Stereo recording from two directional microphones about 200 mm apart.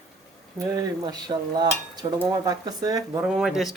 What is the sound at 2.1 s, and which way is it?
Speech, 15° right (ahead or behind).